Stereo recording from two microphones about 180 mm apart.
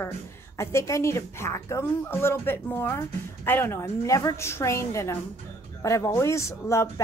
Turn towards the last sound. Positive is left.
turn(degrees=15)  # may be behind; listen again after turning